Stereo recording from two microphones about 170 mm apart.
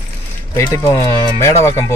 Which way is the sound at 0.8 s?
15° left (ahead or behind).